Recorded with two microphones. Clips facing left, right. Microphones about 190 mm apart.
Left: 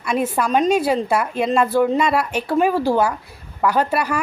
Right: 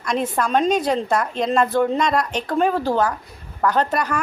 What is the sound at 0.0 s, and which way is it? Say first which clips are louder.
A woman's voice: left 2 dB; 5° left (ahead or behind).